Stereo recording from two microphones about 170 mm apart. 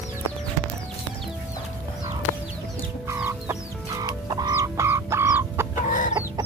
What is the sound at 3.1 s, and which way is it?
Chicken, 15° right (ahead or behind).